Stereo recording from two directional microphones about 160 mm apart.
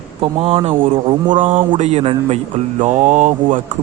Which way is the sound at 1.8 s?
40° right (ahead or behind).